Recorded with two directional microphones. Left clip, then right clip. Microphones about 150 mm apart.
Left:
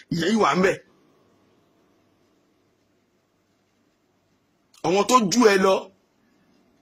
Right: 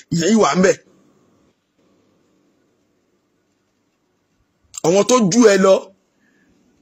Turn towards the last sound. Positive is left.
turn(degrees=-30)  # may be behind; listen again after turning